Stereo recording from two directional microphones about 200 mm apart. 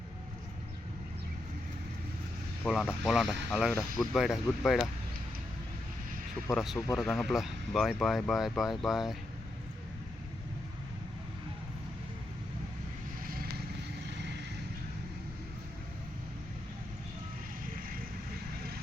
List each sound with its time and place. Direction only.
2.6 s speech: 5° left (ahead or behind)
6.5 s speech: centre (ahead or behind)
13.2 s vehicle: 45° right (ahead or behind)
14.1 s vehicle: 60° right (ahead or behind)